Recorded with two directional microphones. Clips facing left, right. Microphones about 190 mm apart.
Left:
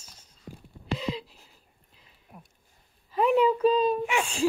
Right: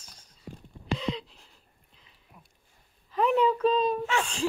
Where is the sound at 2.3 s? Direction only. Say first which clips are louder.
Left 7 dB; 55° left (ahead or behind).